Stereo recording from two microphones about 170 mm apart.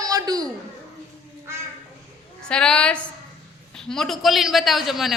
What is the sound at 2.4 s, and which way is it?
A man's voice, 5° left (ahead or behind).